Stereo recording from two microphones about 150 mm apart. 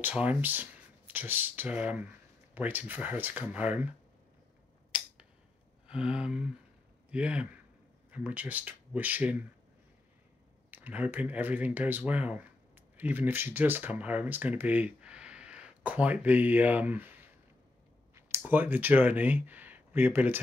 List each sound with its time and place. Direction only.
0.0 s speech: 10° right (ahead or behind)
5.9 s a sound: 5° right (ahead or behind)
7.1 s a man's voice: 10° right (ahead or behind)
10.7 s speech: 10° right (ahead or behind)
18.1 s speech: 15° right (ahead or behind)